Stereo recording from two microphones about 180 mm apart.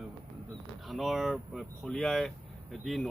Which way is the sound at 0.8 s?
Centre (ahead or behind).